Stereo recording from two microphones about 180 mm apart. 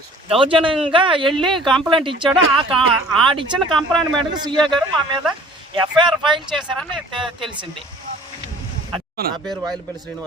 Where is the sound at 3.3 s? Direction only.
30° right (ahead or behind).